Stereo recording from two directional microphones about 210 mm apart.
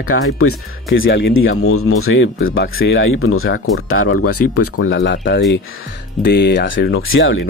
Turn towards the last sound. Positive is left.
turn(degrees=65)  # may be behind; listen again after turning